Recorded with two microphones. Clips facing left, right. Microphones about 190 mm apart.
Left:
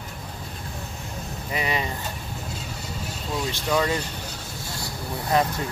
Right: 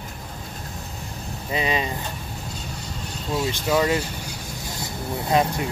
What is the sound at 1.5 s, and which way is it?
Speech, 20° right (ahead or behind).